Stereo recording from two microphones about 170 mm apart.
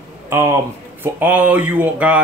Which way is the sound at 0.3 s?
15° right (ahead or behind).